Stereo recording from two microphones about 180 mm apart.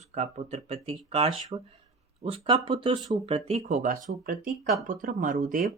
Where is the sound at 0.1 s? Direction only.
40° right (ahead or behind).